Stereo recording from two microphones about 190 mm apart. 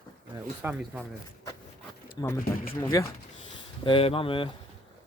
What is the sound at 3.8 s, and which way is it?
Speech, 30° left (ahead or behind).